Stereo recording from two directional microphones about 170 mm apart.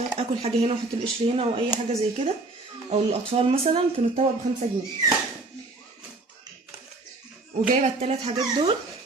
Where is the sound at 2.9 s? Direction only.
35° right (ahead or behind).